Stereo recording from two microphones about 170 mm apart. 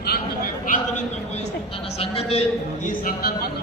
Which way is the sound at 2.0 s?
35° left (ahead or behind).